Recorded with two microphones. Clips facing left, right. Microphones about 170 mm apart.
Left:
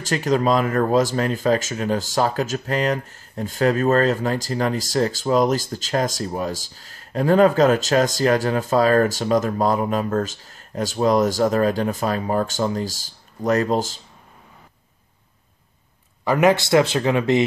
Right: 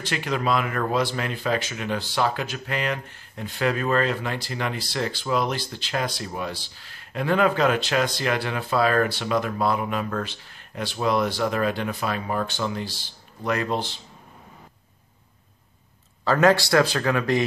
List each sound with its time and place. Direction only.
0.0 s speech: 40° left (ahead or behind)
16.3 s speech: 15° left (ahead or behind)